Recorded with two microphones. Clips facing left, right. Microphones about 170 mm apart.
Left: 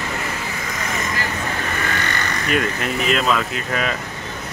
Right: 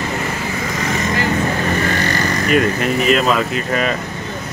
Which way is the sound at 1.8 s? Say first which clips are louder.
Right 6 dB; 35° right (ahead or behind).